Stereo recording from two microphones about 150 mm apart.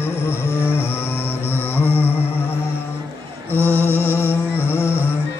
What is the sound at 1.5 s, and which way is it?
Music, 15° left (ahead or behind).